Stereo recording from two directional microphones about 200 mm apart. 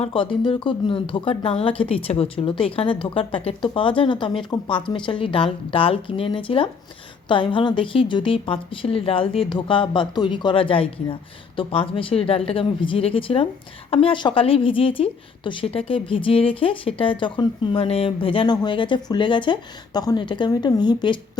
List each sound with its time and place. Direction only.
0.0 s a woman's voice: 25° left (ahead or behind)